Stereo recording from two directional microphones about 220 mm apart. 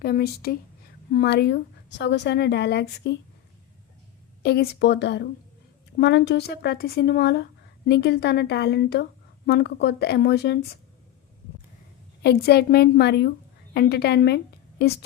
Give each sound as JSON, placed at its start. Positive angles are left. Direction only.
{"t": 0.0, "sound": "a woman's voice", "side_deg": 45}
{"t": 4.4, "sound": "a woman's voice", "side_deg": 45}
{"t": 12.2, "sound": "a woman's voice", "side_deg": 45}